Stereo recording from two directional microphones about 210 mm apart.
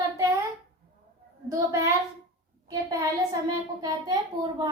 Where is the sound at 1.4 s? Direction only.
15° right (ahead or behind).